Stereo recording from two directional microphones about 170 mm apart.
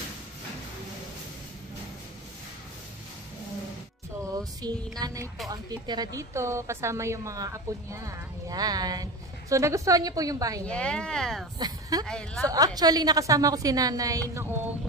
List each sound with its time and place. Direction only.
4.2 s a woman's voice: 20° right (ahead or behind)
10.6 s speech: 5° left (ahead or behind)
11.5 s speech: 25° right (ahead or behind)
12.1 s speech: 5° left (ahead or behind)
12.4 s a woman's voice: 20° right (ahead or behind)